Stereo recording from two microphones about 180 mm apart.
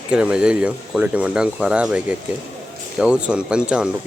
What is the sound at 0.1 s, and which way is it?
Speech, 5° right (ahead or behind).